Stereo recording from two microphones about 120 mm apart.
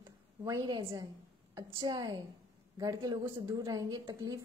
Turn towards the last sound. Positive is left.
turn(degrees=-25)  # may be behind; listen again after turning